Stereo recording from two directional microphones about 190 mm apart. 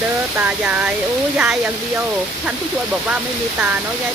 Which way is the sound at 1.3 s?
5° right (ahead or behind).